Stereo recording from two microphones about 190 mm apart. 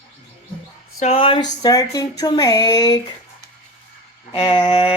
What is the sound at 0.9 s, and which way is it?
Speech, 30° left (ahead or behind).